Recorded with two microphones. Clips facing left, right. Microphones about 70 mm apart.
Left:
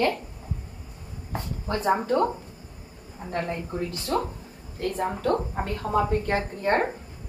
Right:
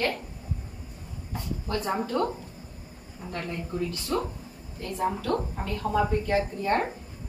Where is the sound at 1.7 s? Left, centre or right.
Left.